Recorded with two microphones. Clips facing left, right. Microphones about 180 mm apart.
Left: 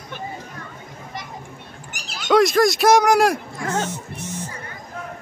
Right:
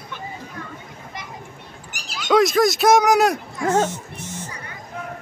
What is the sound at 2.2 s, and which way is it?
Speech, centre (ahead or behind).